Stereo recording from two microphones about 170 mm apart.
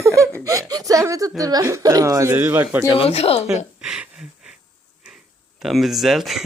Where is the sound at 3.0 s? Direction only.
35° left (ahead or behind).